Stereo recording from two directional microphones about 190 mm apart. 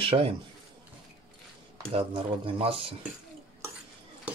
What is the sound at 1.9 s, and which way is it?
Speech, 30° right (ahead or behind).